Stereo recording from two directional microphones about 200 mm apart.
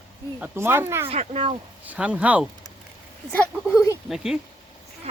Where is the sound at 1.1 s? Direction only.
30° right (ahead or behind).